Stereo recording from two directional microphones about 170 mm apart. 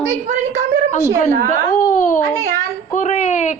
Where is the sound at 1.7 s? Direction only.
55° left (ahead or behind).